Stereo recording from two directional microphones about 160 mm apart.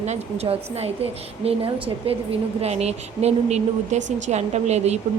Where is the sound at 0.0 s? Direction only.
40° right (ahead or behind).